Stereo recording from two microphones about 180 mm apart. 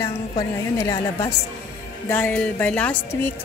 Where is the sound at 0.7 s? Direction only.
15° left (ahead or behind).